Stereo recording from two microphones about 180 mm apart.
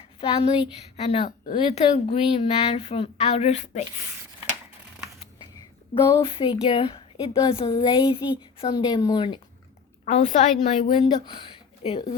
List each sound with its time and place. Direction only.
0.2 s speech: 30° left (ahead or behind)
5.9 s a woman's voice: 25° left (ahead or behind)
10.1 s speech: 40° left (ahead or behind)
11.3 s a sound: 30° left (ahead or behind)